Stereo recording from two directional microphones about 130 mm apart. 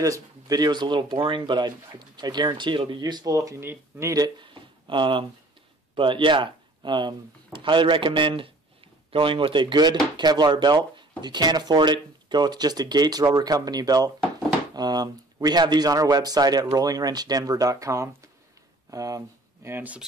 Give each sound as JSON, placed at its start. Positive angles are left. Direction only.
{"t": 0.0, "sound": "speech", "side_deg": -25}